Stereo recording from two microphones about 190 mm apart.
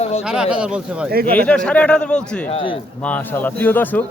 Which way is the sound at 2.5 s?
25° left (ahead or behind).